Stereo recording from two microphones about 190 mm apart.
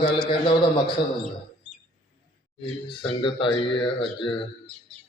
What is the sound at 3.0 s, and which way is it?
A man's voice, 25° left (ahead or behind).